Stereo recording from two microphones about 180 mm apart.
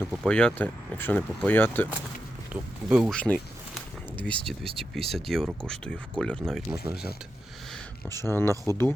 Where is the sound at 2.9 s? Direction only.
Centre (ahead or behind).